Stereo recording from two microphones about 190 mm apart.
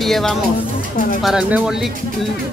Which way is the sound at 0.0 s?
Centre (ahead or behind).